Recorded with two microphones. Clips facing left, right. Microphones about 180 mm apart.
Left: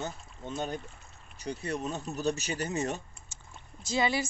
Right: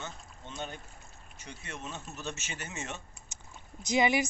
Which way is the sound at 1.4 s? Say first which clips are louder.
Left 10 dB; 35° left (ahead or behind).